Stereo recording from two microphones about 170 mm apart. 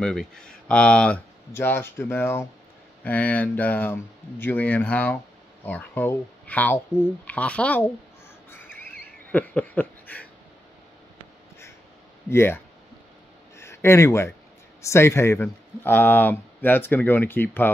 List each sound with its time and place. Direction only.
0.0 s speech: 5° left (ahead or behind)
8.5 s bird: 10° left (ahead or behind)
9.3 s a sound: 10° left (ahead or behind)
12.3 s speech: 15° left (ahead or behind)